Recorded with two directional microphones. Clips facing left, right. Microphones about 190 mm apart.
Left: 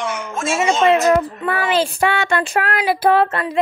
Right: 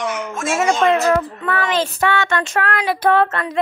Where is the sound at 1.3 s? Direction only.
10° left (ahead or behind).